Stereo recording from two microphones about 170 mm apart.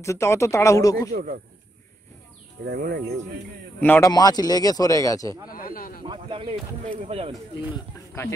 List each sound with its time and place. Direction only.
0.0 s speech: 15° left (ahead or behind)
1.1 s speech: 55° right (ahead or behind)
2.6 s speech: 65° right (ahead or behind)
3.8 s speech: 10° left (ahead or behind)
4.1 s speech: 25° left (ahead or behind)
5.5 s snake: 55° left (ahead or behind)
6.0 s speech: 30° right (ahead or behind)
7.7 s speech: 15° left (ahead or behind)